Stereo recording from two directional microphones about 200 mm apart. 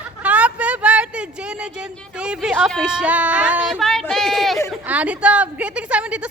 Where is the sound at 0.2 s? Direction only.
5° right (ahead or behind).